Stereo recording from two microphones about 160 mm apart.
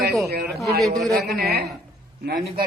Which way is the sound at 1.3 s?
85° right.